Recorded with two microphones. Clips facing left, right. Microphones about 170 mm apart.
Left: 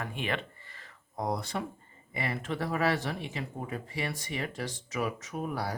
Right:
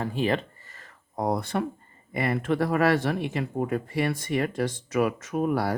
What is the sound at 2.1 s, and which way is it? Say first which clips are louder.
Speech: right 8 dB; 55° right (ahead or behind).